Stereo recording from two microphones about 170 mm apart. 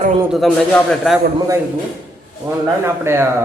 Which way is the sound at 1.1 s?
5° left (ahead or behind).